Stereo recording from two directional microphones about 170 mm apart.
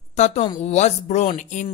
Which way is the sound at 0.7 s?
40° left (ahead or behind).